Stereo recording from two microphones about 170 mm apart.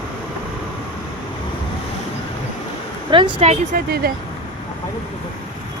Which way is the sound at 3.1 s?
30° right (ahead or behind).